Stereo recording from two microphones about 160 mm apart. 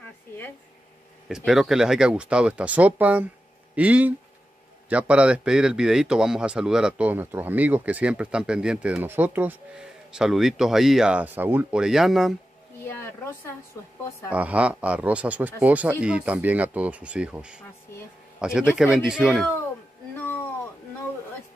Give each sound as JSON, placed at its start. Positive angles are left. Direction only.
{"t": 1.3, "sound": "a man's voice", "side_deg": 0}
{"t": 12.8, "sound": "a sound", "side_deg": 15}
{"t": 13.7, "sound": "speech", "side_deg": 20}
{"t": 14.3, "sound": "a man's voice", "side_deg": -10}